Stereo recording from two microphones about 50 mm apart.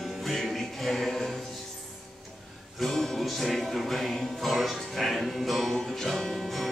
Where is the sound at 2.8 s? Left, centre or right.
Centre.